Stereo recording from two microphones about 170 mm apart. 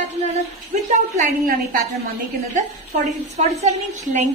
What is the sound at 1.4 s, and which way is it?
Speech, 65° right (ahead or behind).